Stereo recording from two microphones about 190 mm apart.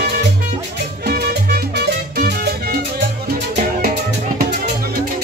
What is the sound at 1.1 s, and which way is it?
Music, 55° right (ahead or behind).